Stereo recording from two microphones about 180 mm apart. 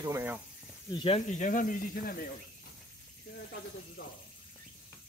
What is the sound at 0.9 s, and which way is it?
Speech, 30° left (ahead or behind).